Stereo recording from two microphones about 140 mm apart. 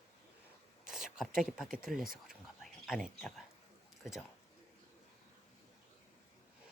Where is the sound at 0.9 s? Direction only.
5° right (ahead or behind).